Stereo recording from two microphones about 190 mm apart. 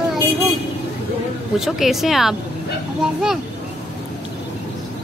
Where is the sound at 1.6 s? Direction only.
Centre (ahead or behind).